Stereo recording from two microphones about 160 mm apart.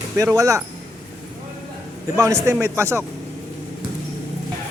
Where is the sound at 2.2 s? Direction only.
15° right (ahead or behind).